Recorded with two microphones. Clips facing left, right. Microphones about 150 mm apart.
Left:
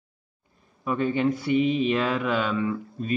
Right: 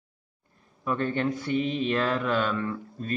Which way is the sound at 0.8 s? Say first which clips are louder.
Left 3 dB; 10° left (ahead or behind).